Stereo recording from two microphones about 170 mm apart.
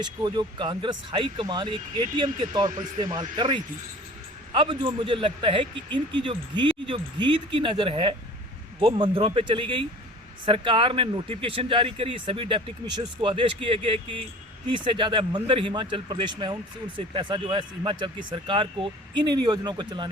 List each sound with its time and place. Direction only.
0.0 s speech: 25° right (ahead or behind)